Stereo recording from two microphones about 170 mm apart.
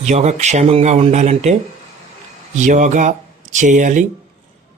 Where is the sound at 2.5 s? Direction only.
45° right (ahead or behind).